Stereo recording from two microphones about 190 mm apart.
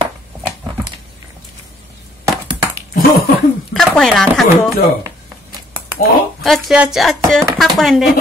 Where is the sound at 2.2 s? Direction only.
15° right (ahead or behind).